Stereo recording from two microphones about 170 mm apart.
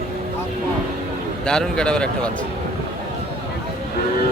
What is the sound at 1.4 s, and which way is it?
Speech, 5° left (ahead or behind).